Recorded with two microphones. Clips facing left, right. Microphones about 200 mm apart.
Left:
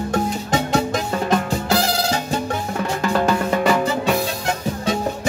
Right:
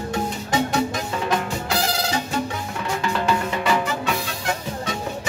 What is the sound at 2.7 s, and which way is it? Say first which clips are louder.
Music: left 4 dB; 45° left (ahead or behind).